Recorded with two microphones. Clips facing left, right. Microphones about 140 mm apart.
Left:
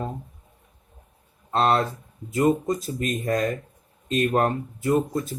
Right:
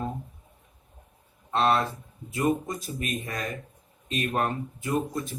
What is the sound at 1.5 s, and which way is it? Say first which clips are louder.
Speech: left 3 dB; 30° left (ahead or behind).